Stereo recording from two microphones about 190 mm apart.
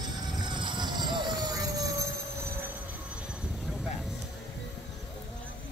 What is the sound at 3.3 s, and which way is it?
Vehicle, 5° right (ahead or behind).